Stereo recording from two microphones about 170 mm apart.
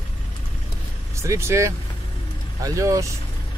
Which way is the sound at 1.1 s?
15° right (ahead or behind).